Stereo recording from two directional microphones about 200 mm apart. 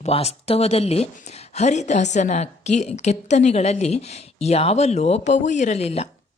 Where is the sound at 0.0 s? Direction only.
30° left (ahead or behind).